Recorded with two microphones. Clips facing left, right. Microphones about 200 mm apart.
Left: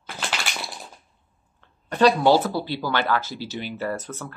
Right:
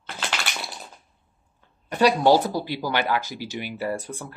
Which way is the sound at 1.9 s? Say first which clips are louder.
Left 1 dB; 10° right (ahead or behind).